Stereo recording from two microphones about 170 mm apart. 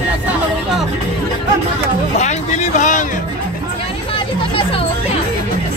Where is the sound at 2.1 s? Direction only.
45° left (ahead or behind).